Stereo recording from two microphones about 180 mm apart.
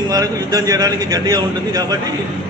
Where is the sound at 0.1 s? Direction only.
20° right (ahead or behind).